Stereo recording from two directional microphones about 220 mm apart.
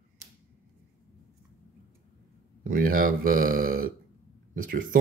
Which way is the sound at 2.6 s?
40° right (ahead or behind).